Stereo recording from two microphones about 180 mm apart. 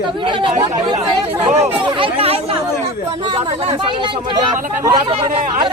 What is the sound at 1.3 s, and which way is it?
Speech, 10° right (ahead or behind).